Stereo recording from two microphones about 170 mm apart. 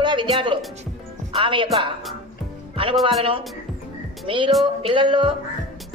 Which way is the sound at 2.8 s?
30° right (ahead or behind).